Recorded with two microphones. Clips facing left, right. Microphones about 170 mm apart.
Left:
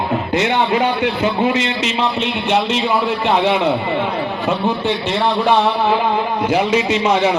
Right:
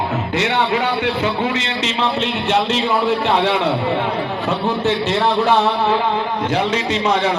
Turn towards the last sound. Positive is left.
turn(degrees=5)  # may be behind; listen again after turning